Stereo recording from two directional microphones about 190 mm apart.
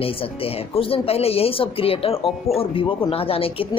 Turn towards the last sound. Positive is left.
turn(degrees=30)  # may be behind; listen again after turning